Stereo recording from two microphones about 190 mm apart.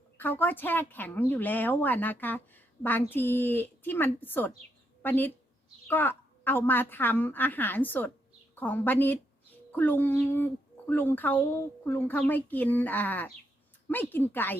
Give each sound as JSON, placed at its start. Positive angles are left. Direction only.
{"t": 0.2, "sound": "speech", "side_deg": 10}